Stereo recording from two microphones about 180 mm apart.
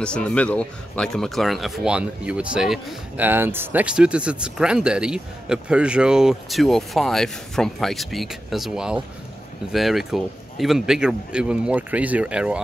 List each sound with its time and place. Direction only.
0.0 s speech: 5° left (ahead or behind)